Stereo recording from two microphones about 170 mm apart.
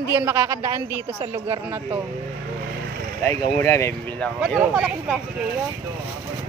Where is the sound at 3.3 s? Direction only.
15° left (ahead or behind).